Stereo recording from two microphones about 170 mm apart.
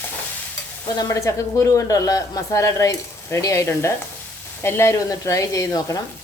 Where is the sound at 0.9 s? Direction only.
20° left (ahead or behind).